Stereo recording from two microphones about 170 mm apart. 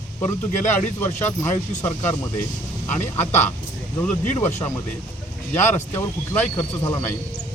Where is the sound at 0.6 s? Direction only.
45° left (ahead or behind).